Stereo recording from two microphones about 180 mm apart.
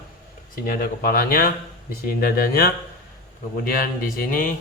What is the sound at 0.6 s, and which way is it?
A man's voice, 55° left (ahead or behind).